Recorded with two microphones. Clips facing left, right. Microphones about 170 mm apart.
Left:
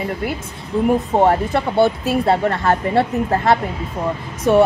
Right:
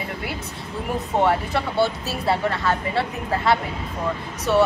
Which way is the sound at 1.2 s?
50° left (ahead or behind).